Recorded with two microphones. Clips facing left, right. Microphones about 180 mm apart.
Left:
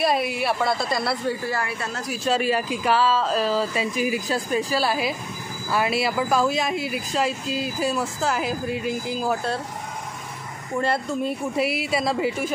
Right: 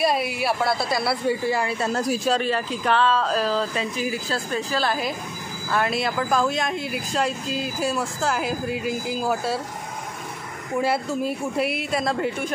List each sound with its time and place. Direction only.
0.0 s speech: centre (ahead or behind)
1.4 s speech: 20° right (ahead or behind)
2.2 s speech: 5° left (ahead or behind)
10.8 s speech: 5° right (ahead or behind)